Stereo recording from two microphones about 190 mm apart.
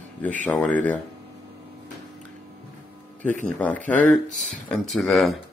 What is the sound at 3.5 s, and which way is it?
Speech, 10° left (ahead or behind).